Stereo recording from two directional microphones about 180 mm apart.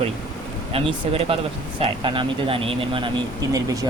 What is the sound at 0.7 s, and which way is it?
Speech, 35° right (ahead or behind).